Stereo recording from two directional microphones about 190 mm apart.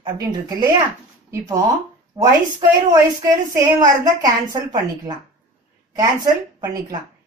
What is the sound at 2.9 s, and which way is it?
A woman's voice, 15° right (ahead or behind).